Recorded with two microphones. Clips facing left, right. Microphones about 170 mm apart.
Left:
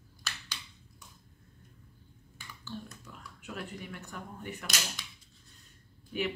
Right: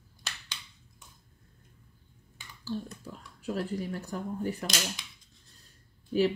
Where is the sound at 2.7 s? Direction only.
35° right (ahead or behind).